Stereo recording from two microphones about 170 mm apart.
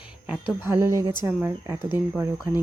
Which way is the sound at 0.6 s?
15° right (ahead or behind).